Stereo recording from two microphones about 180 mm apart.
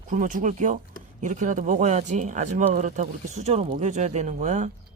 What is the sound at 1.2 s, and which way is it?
Speech, 45° right (ahead or behind).